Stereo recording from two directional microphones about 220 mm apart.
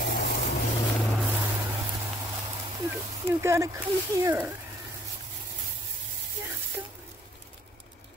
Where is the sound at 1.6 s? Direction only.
10° right (ahead or behind).